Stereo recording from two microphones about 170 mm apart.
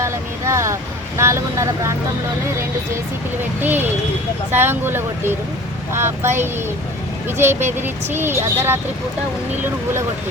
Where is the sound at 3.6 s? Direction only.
10° right (ahead or behind).